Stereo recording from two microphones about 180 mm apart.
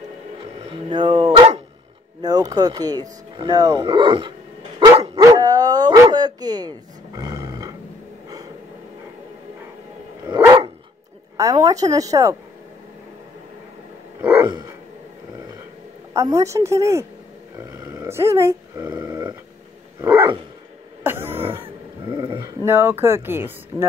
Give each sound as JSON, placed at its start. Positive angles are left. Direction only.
{"t": 0.7, "sound": "a sound", "side_deg": -25}
{"t": 2.2, "sound": "speech", "side_deg": -20}
{"t": 4.7, "sound": "dog", "side_deg": -30}
{"t": 5.2, "sound": "dog", "side_deg": -20}
{"t": 10.2, "sound": "dog", "side_deg": -20}
{"t": 11.3, "sound": "speech", "side_deg": -20}
{"t": 14.2, "sound": "dog", "side_deg": -10}
{"t": 16.2, "sound": "a woman's voice", "side_deg": -15}
{"t": 17.6, "sound": "dog", "side_deg": -15}
{"t": 21.0, "sound": "throat clearing", "side_deg": -10}
{"t": 21.6, "sound": "a sound", "side_deg": -25}